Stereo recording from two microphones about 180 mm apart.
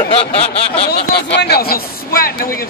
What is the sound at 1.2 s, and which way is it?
A man's voice, 65° left (ahead or behind).